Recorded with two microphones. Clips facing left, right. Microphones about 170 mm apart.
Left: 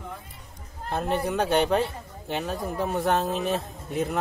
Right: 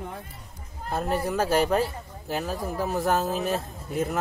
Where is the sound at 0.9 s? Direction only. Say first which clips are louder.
Even; centre (ahead or behind).